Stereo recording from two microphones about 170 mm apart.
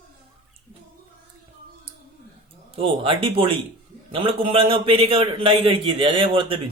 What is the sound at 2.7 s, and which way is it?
Speech, 30° right (ahead or behind).